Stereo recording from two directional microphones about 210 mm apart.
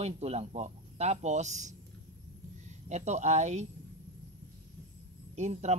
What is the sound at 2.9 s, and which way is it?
Speech, 35° right (ahead or behind).